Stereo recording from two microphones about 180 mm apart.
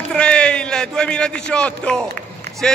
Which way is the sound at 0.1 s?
5° left (ahead or behind).